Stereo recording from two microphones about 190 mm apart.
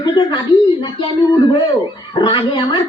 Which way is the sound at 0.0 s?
25° left (ahead or behind).